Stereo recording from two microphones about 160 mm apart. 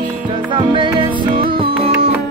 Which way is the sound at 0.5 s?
30° right (ahead or behind).